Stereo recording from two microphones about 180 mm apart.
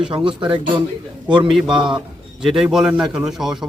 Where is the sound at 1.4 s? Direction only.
Centre (ahead or behind).